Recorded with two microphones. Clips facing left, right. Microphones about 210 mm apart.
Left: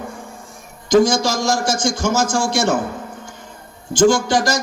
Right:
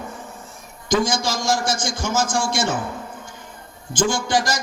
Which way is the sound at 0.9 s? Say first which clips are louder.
Left 7 dB; 45° left (ahead or behind).